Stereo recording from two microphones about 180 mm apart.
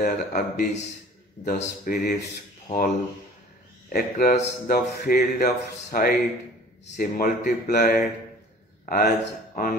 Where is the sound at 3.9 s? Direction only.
55° left (ahead or behind).